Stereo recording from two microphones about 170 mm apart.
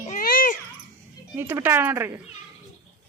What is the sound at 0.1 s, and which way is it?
Babbling, 55° left (ahead or behind).